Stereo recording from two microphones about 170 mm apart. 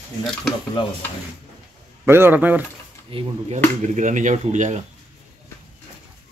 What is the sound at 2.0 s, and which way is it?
Speech, 15° right (ahead or behind).